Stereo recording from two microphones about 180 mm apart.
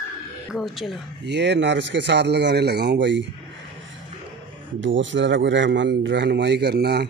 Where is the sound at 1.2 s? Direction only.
75° right (ahead or behind).